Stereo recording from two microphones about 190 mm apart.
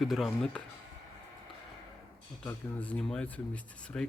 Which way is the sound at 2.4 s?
5° left (ahead or behind).